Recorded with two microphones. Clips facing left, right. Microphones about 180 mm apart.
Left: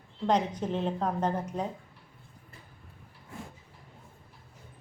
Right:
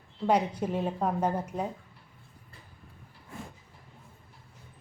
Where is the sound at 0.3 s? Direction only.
10° right (ahead or behind).